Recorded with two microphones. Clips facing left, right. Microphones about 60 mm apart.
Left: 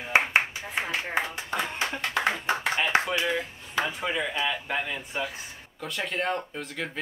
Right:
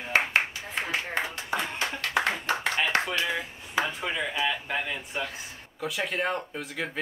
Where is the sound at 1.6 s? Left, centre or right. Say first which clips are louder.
Left 5 dB; centre.